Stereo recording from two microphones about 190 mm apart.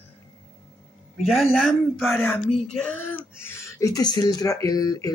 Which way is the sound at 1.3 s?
Centre (ahead or behind).